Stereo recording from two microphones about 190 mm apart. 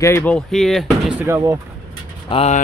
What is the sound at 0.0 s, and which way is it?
Speech, 10° left (ahead or behind).